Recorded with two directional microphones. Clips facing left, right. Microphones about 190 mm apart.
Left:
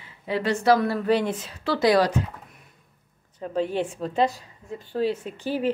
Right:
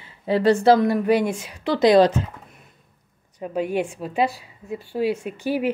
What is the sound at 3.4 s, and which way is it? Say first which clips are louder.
A woman's voice: right 2 dB; 10° right (ahead or behind).